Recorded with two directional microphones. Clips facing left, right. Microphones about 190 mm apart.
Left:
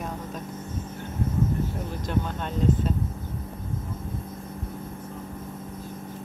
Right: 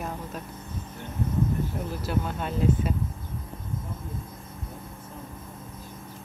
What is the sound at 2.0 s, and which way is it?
Speech, 5° right (ahead or behind).